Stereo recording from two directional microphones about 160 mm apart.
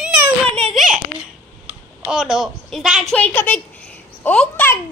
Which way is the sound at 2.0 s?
5° right (ahead or behind).